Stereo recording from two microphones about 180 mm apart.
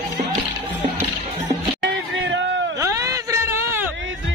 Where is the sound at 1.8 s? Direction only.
90° right.